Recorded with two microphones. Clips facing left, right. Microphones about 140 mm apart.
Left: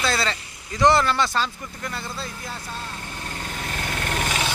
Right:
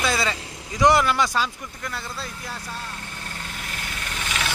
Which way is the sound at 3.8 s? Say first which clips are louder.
Left 8 dB; 55° left (ahead or behind).